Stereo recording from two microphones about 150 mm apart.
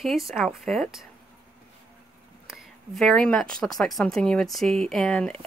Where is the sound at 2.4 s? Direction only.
Centre (ahead or behind).